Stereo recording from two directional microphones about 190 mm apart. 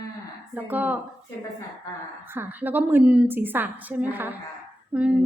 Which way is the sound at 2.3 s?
10° right (ahead or behind).